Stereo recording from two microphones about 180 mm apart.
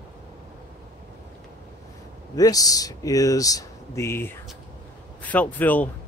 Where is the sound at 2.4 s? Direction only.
20° left (ahead or behind).